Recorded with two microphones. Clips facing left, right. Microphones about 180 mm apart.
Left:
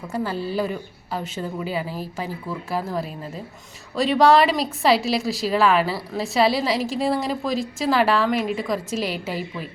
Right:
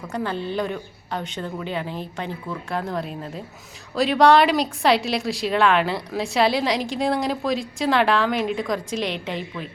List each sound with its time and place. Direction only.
0.1 s a woman's voice: 5° left (ahead or behind)